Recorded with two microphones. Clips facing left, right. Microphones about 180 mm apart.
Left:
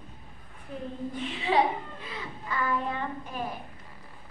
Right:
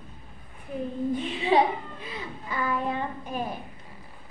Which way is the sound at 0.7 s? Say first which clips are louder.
Right 6 dB; 15° right (ahead or behind).